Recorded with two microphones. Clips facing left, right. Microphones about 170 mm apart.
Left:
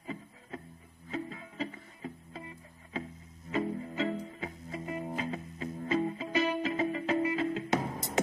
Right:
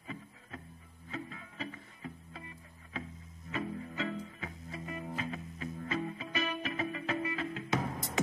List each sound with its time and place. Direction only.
0.0 s music: 30° left (ahead or behind)
3.4 s music: 30° left (ahead or behind)